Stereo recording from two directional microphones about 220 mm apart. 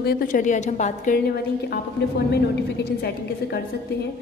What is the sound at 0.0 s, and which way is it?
A woman's voice, 40° left (ahead or behind).